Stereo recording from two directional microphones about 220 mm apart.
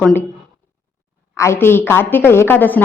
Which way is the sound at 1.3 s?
10° left (ahead or behind).